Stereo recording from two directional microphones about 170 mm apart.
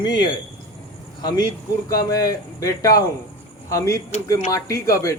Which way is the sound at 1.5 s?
20° left (ahead or behind).